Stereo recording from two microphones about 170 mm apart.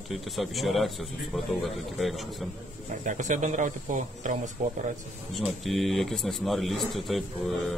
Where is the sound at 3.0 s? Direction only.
45° right (ahead or behind).